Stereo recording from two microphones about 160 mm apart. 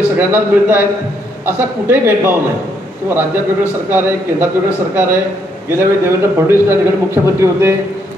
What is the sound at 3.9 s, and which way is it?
Speech, 15° right (ahead or behind).